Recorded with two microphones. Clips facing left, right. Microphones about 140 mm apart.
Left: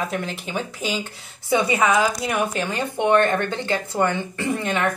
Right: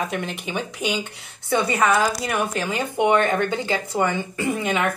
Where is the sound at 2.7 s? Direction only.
10° right (ahead or behind).